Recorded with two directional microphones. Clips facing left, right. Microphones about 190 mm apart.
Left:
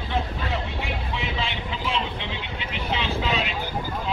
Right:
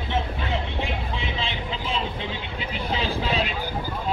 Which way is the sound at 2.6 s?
40° right (ahead or behind).